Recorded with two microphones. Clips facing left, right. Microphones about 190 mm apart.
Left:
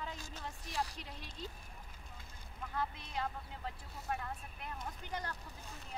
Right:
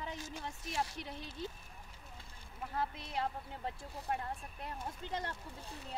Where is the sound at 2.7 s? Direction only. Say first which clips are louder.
Right 2 dB; 30° right (ahead or behind).